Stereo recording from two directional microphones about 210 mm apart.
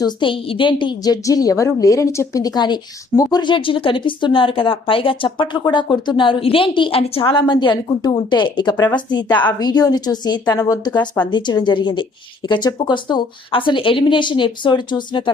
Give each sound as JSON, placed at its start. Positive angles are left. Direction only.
{"t": 0.0, "sound": "a woman's voice", "side_deg": 25}